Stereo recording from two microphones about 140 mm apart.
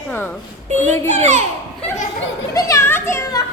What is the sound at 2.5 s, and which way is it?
Children playing, 25° left (ahead or behind).